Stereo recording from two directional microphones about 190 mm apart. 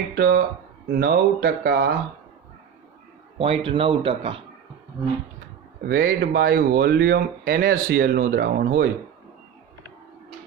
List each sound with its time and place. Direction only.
0.2 s speech: 55° right (ahead or behind)
3.3 s speech: 30° right (ahead or behind)
5.9 s speech: 50° right (ahead or behind)